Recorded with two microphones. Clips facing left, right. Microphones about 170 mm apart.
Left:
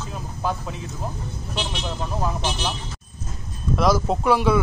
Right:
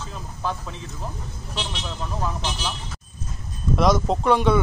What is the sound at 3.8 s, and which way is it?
Speech, 5° left (ahead or behind).